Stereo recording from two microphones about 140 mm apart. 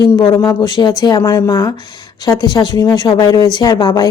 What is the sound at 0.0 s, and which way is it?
Speech, 30° left (ahead or behind).